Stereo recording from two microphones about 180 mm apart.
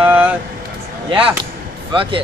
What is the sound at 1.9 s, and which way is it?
Speech, 30° right (ahead or behind).